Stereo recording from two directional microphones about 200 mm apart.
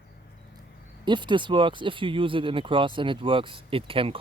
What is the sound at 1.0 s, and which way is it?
Speech, 25° right (ahead or behind).